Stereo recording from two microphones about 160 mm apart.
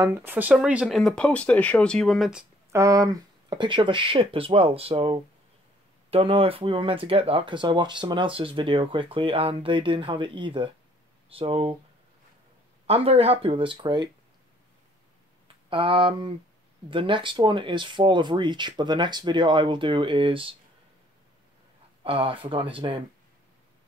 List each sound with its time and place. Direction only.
0.0 s speech: 15° right (ahead or behind)
2.7 s speech: 20° right (ahead or behind)
12.8 s speech: 40° right (ahead or behind)
15.4 s speech: 35° right (ahead or behind)
22.0 s speech: 35° right (ahead or behind)